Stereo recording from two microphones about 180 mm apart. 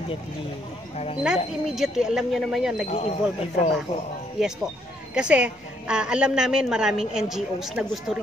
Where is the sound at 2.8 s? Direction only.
35° left (ahead or behind).